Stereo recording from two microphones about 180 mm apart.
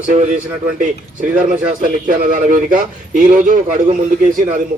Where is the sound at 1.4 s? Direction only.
50° right (ahead or behind).